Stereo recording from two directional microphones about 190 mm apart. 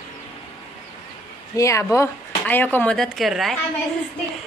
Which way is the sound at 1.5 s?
15° left (ahead or behind).